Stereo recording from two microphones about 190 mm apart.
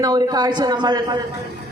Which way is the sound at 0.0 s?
20° right (ahead or behind).